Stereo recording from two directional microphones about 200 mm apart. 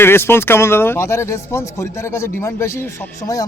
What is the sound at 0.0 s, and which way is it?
A man's voice, 10° left (ahead or behind).